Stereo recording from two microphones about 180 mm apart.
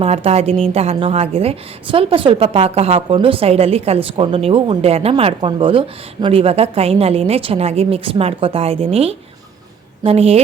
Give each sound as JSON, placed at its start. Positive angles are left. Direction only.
{"t": 0.0, "sound": "a woman's voice", "side_deg": -35}